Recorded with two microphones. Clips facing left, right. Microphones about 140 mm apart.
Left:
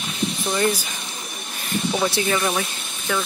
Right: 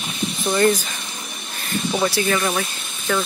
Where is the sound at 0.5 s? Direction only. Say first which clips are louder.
Right 6 dB; 10° left (ahead or behind).